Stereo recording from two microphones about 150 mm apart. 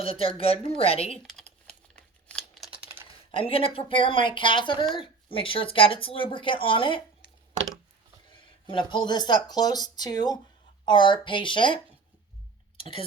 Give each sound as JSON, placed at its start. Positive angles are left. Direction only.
{"t": 0.0, "sound": "speech", "side_deg": 40}
{"t": 1.6, "sound": "crumpling", "side_deg": 5}
{"t": 3.3, "sound": "speech", "side_deg": 40}
{"t": 8.3, "sound": "speech", "side_deg": 30}
{"t": 12.7, "sound": "a sound", "side_deg": 35}